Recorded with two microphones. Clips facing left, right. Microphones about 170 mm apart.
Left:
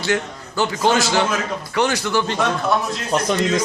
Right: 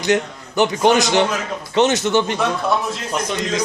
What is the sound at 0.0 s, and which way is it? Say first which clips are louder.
A man's voice: right 3 dB; 20° right (ahead or behind).